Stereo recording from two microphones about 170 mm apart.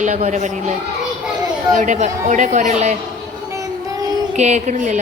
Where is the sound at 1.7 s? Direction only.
45° right (ahead or behind).